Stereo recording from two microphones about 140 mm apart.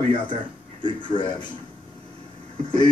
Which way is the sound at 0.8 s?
35° left (ahead or behind).